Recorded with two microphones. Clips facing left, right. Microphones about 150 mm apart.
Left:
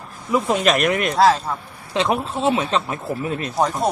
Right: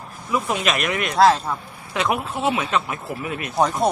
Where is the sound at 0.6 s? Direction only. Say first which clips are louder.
Left 5 dB; 45° left (ahead or behind).